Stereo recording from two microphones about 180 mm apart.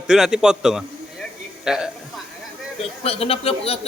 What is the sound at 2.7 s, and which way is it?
Speech, 35° left (ahead or behind).